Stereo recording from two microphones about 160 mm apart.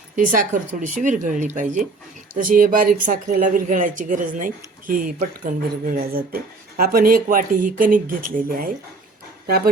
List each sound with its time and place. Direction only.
0.2 s speech: 55° right (ahead or behind)